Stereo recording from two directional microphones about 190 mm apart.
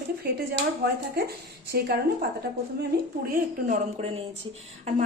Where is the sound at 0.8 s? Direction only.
60° right (ahead or behind).